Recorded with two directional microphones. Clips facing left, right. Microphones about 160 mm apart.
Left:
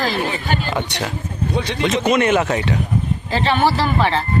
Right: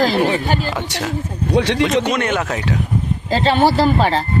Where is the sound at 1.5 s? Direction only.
75° right (ahead or behind).